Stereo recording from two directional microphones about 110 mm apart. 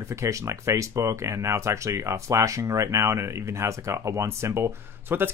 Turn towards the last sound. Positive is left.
turn(degrees=-20)  # may be behind; listen again after turning